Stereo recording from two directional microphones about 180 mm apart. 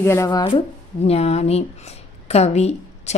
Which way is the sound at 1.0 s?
35° left (ahead or behind).